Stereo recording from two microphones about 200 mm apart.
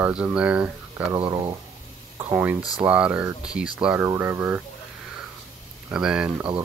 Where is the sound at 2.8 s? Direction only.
5° right (ahead or behind).